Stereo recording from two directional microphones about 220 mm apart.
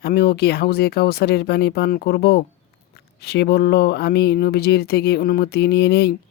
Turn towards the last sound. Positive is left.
turn(degrees=45)  # may be behind; listen again after turning